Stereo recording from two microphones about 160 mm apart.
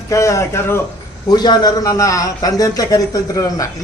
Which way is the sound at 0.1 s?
20° left (ahead or behind).